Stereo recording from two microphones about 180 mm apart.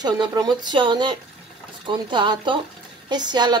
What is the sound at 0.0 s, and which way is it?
Speech, 20° right (ahead or behind).